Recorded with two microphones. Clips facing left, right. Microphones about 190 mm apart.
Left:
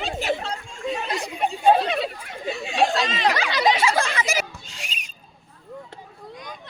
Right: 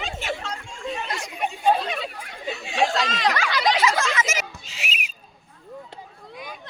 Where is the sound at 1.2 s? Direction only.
35° left (ahead or behind).